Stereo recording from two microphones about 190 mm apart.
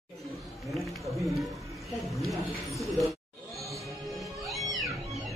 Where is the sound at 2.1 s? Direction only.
Centre (ahead or behind).